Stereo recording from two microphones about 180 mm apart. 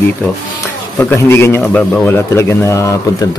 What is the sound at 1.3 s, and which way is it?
Speech, 15° left (ahead or behind).